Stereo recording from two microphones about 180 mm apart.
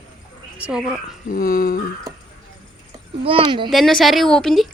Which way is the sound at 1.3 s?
50° left (ahead or behind).